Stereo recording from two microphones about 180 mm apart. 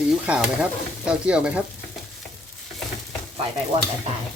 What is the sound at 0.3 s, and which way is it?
Stir, 5° right (ahead or behind).